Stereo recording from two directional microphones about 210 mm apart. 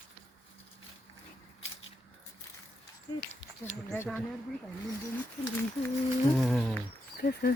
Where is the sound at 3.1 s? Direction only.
20° left (ahead or behind).